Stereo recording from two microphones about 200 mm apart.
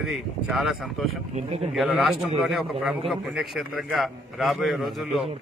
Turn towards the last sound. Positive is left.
turn(degrees=0)  # may be behind; listen again after turning